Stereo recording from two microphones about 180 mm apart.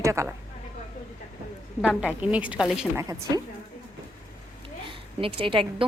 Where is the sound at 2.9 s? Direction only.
20° right (ahead or behind).